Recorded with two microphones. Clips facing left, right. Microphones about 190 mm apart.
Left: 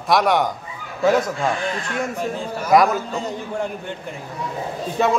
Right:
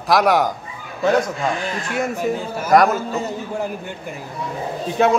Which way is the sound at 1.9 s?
5° right (ahead or behind).